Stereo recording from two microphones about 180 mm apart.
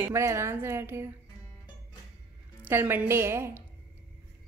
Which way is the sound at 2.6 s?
10° right (ahead or behind).